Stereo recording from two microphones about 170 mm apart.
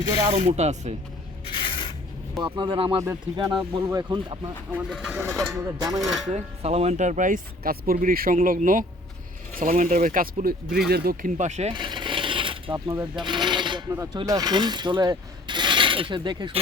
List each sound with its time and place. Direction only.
0.3 s speech: 40° right (ahead or behind)
1.5 s a sound: 30° left (ahead or behind)
2.4 s speech: 30° right (ahead or behind)
3.0 s speech: 15° right (ahead or behind)
4.7 s speech: centre (ahead or behind)
5.5 s speech: 20° right (ahead or behind)
6.0 s speech: centre (ahead or behind)
6.3 s speech: 40° right (ahead or behind)
11.7 s mechanisms: 30° right (ahead or behind)
13.2 s filing: 25° right (ahead or behind)